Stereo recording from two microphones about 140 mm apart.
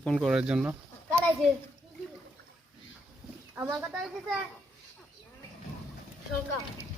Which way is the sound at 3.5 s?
15° right (ahead or behind).